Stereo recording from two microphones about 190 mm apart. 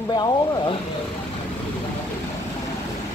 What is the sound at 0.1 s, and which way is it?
Speech, 25° left (ahead or behind).